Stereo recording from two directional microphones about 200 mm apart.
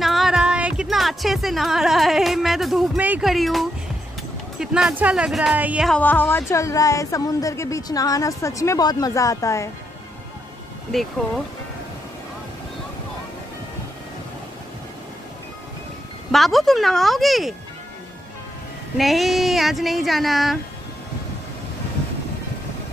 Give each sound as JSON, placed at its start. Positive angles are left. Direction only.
{"t": 0.0, "sound": "speech", "side_deg": 0}
{"t": 5.9, "sound": "a woman's voice", "side_deg": 10}
{"t": 10.9, "sound": "speech", "side_deg": 0}
{"t": 16.3, "sound": "speech", "side_deg": 0}
{"t": 18.9, "sound": "speech", "side_deg": 0}